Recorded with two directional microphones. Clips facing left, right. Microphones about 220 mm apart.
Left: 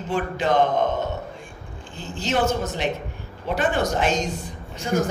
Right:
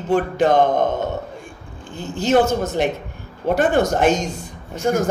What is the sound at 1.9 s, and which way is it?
A man's voice, 45° right (ahead or behind).